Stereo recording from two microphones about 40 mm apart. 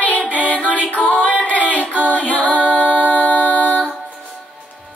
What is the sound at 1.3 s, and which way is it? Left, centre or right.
Music, right.